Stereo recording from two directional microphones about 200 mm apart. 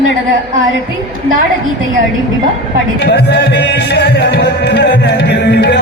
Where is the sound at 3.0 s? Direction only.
55° left (ahead or behind).